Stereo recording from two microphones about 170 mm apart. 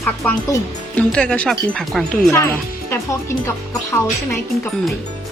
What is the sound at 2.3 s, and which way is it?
Speech, 15° left (ahead or behind).